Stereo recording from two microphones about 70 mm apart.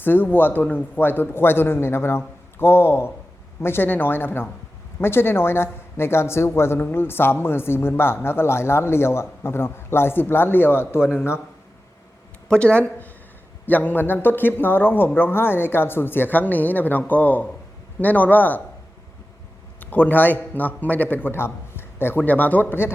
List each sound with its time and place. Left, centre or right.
0.0 s a man's voice: left
12.5 s a man's voice: centre
19.8 s a man's voice: left